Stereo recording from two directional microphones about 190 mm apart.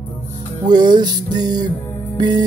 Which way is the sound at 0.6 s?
20° right (ahead or behind).